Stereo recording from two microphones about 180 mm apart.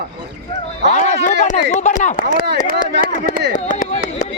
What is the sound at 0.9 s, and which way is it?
Speech, 40° left (ahead or behind).